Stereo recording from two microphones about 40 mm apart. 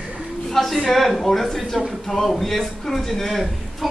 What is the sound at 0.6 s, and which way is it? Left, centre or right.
A man's voice, centre.